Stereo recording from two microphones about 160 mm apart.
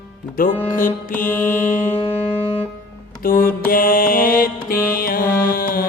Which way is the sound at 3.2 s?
60° left (ahead or behind).